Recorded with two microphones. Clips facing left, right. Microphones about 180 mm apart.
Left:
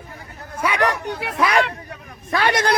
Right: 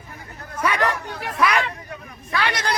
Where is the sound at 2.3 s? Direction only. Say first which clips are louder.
Left 5 dB; 50° left (ahead or behind).